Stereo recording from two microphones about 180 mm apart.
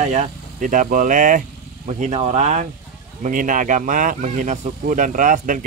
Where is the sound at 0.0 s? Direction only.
35° right (ahead or behind).